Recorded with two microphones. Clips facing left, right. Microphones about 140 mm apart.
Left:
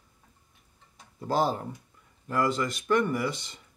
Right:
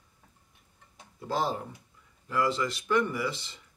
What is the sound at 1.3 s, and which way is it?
Speech, 45° left (ahead or behind).